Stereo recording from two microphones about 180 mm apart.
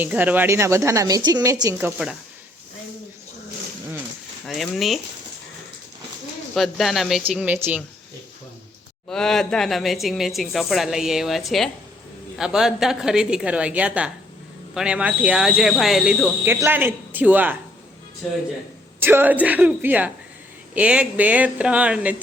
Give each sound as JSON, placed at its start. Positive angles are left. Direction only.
{"t": 0.0, "sound": "speech", "side_deg": -10}
{"t": 4.4, "sound": "a woman's voice", "side_deg": 0}
{"t": 6.5, "sound": "a woman's voice", "side_deg": 0}
{"t": 9.0, "sound": "a woman's voice", "side_deg": 5}
{"t": 18.9, "sound": "speech", "side_deg": -10}